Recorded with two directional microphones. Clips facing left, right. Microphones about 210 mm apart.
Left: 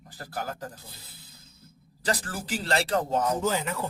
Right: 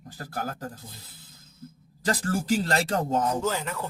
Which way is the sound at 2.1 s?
40° right (ahead or behind).